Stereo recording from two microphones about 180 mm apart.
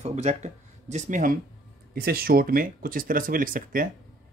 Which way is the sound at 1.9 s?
60° right (ahead or behind).